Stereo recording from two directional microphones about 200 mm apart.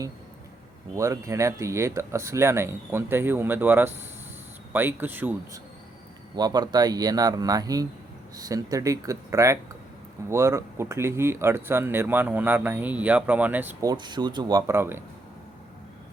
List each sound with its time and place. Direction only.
0.9 s speech: 15° right (ahead or behind)
6.3 s speech: 20° right (ahead or behind)
13.9 s speech: 20° right (ahead or behind)